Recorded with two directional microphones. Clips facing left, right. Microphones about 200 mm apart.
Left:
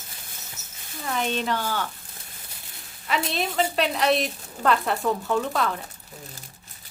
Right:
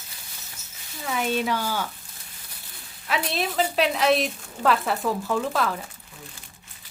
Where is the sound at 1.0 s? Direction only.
5° right (ahead or behind).